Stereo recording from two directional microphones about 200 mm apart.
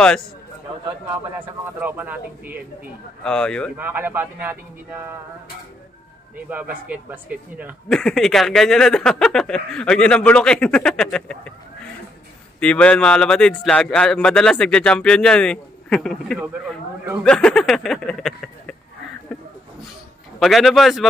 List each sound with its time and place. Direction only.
1.4 s speech: 10° right (ahead or behind)
3.3 s a man's voice: 5° left (ahead or behind)
3.7 s speech: 10° right (ahead or behind)
6.3 s a man's voice: 10° right (ahead or behind)
20.3 s a man's voice: centre (ahead or behind)